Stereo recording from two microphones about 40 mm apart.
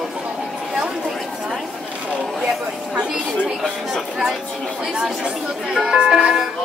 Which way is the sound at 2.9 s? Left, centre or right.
Right.